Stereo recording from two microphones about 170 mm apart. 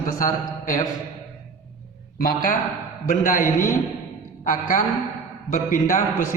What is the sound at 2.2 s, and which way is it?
A man's voice, 55° left (ahead or behind).